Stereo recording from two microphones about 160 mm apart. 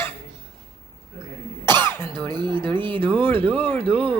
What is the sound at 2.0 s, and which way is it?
Speech, 30° right (ahead or behind).